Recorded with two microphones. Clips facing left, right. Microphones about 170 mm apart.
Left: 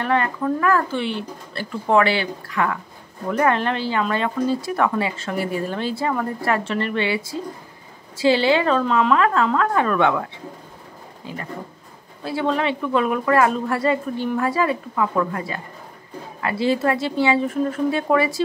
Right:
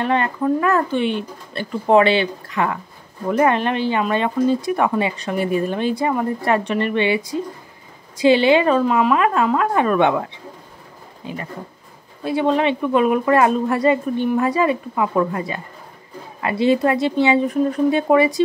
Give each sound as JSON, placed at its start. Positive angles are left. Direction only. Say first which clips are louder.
{"t": 0.0, "sound": "a woman's voice", "louder": "right 2 dB", "side_deg": -20}
{"t": 11.2, "sound": "speech", "louder": "right 2 dB", "side_deg": -20}